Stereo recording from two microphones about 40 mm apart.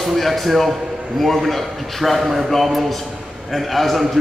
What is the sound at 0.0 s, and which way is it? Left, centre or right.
A man's voice, centre.